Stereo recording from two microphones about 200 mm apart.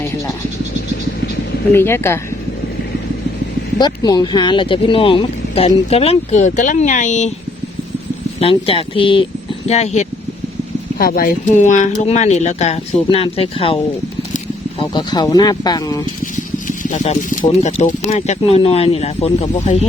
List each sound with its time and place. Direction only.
1.7 s speech: 10° left (ahead or behind)
3.8 s speech: 20° left (ahead or behind); by 7.3 s 35° left (ahead or behind)
8.4 s speech: 30° left (ahead or behind)
10.9 s speech: 45° left (ahead or behind); by 13.7 s 30° left (ahead or behind)
14.8 s speech: 20° left (ahead or behind)
16.6 s speech: 40° left (ahead or behind)